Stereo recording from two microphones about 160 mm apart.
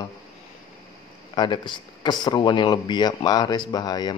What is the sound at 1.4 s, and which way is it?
Speech, 30° left (ahead or behind).